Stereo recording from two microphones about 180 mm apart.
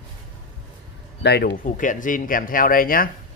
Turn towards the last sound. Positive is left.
turn(degrees=50)  # may be behind; listen again after turning